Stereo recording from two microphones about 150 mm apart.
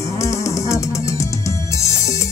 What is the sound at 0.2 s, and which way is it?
Music, 20° left (ahead or behind).